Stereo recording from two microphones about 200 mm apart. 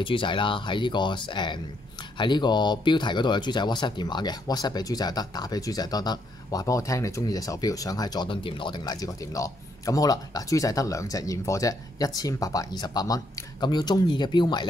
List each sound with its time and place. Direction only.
0.0 s speech: 25° left (ahead or behind)